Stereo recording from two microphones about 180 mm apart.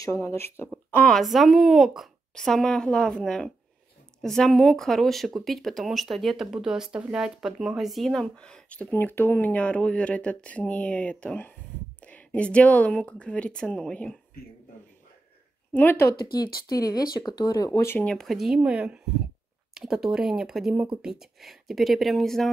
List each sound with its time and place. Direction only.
0.0 s speech: 15° left (ahead or behind)
15.7 s speech: 10° left (ahead or behind)